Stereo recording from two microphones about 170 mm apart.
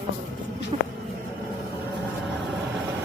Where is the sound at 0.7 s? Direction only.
35° right (ahead or behind).